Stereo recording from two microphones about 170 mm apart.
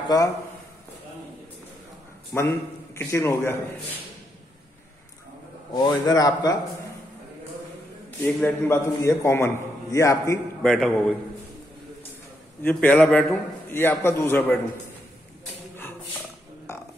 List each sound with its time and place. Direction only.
2.3 s a man's voice: 15° left (ahead or behind)
5.7 s a man's voice: 25° left (ahead or behind)
8.4 s a man's voice: 10° left (ahead or behind)
10.6 s a man's voice: 5° left (ahead or behind)
12.6 s a man's voice: 10° left (ahead or behind)